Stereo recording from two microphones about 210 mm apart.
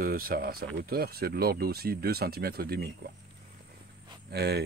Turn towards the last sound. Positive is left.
turn(degrees=-50)  # may be behind; listen again after turning